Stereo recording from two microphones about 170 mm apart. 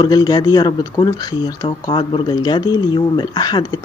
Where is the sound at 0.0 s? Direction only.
25° left (ahead or behind).